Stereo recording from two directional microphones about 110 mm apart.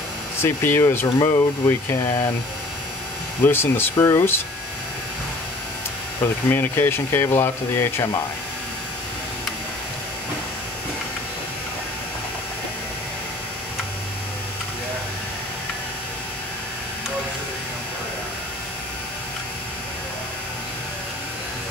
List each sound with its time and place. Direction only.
0.4 s speech: 20° left (ahead or behind)
3.4 s speech: 20° left (ahead or behind)
6.5 s speech: 20° left (ahead or behind)